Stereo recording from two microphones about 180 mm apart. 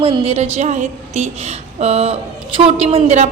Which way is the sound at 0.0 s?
30° right (ahead or behind).